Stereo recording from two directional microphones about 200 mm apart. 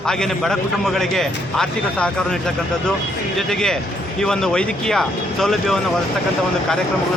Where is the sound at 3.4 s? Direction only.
Centre (ahead or behind).